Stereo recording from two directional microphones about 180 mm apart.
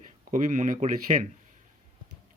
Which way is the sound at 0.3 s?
45° right (ahead or behind).